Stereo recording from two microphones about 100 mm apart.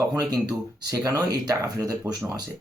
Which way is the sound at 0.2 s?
40° right (ahead or behind).